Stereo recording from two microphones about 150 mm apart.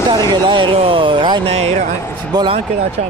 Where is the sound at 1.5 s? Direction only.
45° right (ahead or behind).